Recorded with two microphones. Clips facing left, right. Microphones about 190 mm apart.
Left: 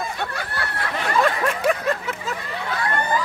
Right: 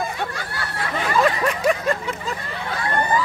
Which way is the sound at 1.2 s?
Centre (ahead or behind).